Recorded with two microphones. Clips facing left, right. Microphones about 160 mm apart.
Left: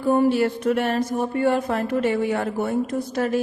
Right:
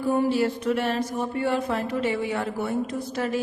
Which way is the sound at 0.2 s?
60° left (ahead or behind).